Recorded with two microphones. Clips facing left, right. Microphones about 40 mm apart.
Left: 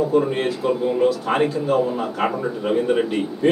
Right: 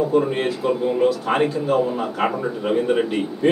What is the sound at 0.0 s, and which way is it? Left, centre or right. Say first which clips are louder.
A man's voice: even; centre.